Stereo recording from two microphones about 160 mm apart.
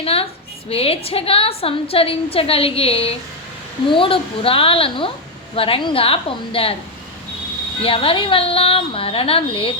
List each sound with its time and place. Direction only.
0.0 s a sound: 35° left (ahead or behind)
0.7 s a woman's voice: 35° left (ahead or behind)
7.8 s a woman's voice: 35° left (ahead or behind)